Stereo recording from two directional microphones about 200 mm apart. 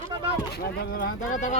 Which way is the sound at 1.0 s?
40° left (ahead or behind).